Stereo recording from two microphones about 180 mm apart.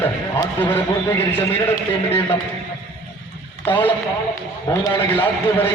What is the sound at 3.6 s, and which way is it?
A man's voice, 10° left (ahead or behind).